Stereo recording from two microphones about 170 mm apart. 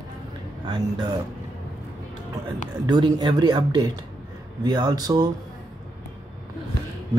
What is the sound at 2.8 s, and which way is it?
Speech, 25° right (ahead or behind).